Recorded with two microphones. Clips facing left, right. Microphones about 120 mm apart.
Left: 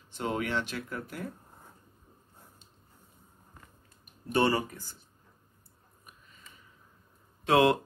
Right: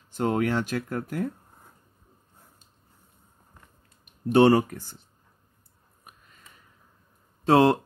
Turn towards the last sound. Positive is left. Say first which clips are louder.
# right 4 dB
turn(degrees=-35)  # may be behind; listen again after turning